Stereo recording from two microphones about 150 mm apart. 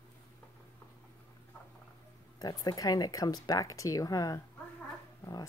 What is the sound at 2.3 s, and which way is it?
Speech, 25° left (ahead or behind).